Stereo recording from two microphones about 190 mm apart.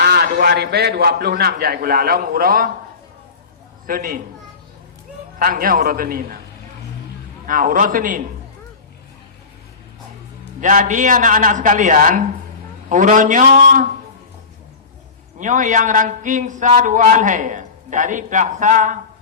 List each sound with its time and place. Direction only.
0.0 s a man's voice: 55° right (ahead or behind)
3.8 s a man's voice: 50° right (ahead or behind)
5.4 s a man's voice: 50° right (ahead or behind)
7.4 s a man's voice: 45° right (ahead or behind)
10.6 s a man's voice: 45° right (ahead or behind)
15.4 s a man's voice: 40° right (ahead or behind)